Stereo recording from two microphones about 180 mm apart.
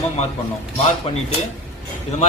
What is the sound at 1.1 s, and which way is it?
Speech, 35° left (ahead or behind).